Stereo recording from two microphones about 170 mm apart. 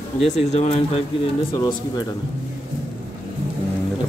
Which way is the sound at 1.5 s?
25° left (ahead or behind).